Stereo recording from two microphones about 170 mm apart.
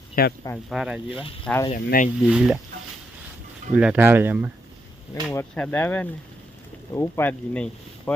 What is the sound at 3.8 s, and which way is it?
Speech, 10° right (ahead or behind).